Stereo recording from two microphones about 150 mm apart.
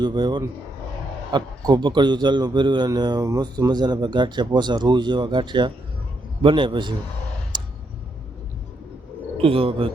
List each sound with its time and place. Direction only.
0.0 s a man's voice: 30° right (ahead or behind)
7.5 s a sound: 30° right (ahead or behind)
9.4 s a man's voice: 40° right (ahead or behind)